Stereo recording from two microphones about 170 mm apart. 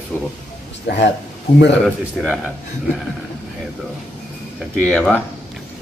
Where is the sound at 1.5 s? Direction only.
35° left (ahead or behind).